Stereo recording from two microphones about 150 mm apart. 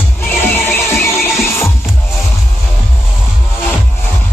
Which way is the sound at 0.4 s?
15° left (ahead or behind).